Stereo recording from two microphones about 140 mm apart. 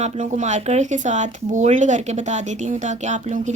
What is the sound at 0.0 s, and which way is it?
A woman's voice, 60° right (ahead or behind).